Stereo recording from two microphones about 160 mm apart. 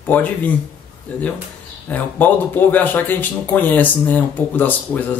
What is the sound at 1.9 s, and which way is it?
Speech, 10° left (ahead or behind).